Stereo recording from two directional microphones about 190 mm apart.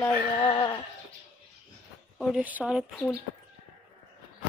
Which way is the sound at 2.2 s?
5° right (ahead or behind).